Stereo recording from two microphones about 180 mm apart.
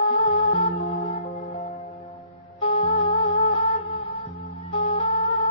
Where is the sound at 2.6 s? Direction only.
35° left (ahead or behind).